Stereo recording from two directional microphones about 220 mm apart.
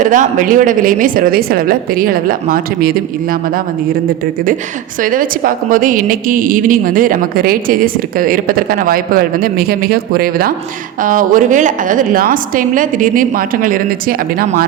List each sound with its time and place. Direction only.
0.0 s a woman's voice: 35° right (ahead or behind)
5.1 s a woman's voice: 40° right (ahead or behind)